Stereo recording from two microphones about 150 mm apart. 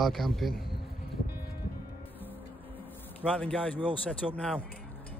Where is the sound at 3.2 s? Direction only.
10° left (ahead or behind).